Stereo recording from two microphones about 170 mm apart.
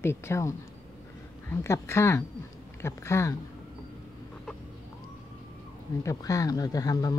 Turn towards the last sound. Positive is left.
turn(degrees=20)  # may be behind; listen again after turning